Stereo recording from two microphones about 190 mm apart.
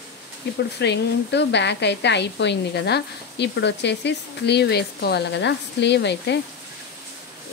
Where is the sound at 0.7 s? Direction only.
65° left (ahead or behind).